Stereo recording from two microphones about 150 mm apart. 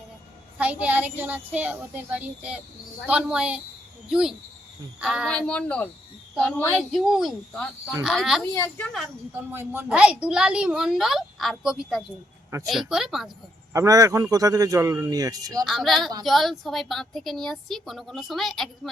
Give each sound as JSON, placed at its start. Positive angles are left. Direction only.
{"t": 0.6, "sound": "a woman's voice", "side_deg": -10}
{"t": 5.3, "sound": "speech", "side_deg": 10}
{"t": 6.9, "sound": "a woman's voice", "side_deg": 0}
{"t": 8.5, "sound": "speech", "side_deg": 10}
{"t": 9.3, "sound": "a woman's voice", "side_deg": -15}
{"t": 13.7, "sound": "a man's voice", "side_deg": -20}
{"t": 15.6, "sound": "a woman's voice", "side_deg": 0}